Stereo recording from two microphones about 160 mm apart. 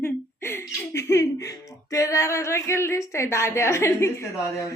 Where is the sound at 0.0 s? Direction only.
15° left (ahead or behind).